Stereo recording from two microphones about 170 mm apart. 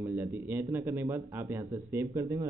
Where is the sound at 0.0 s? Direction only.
10° right (ahead or behind).